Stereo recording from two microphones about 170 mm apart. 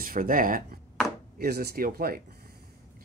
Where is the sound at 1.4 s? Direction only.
65° right (ahead or behind).